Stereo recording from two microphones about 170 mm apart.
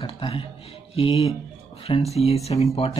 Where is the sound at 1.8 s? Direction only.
35° left (ahead or behind).